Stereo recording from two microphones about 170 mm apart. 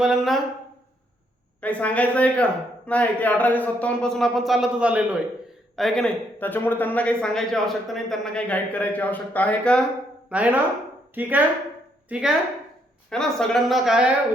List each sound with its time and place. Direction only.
0.0 s a woman's voice: centre (ahead or behind)
1.6 s speech: 10° left (ahead or behind)
10.2 s a woman's voice: 10° right (ahead or behind)